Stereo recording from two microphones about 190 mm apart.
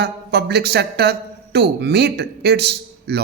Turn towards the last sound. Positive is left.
turn(degrees=-60)  # may be behind; listen again after turning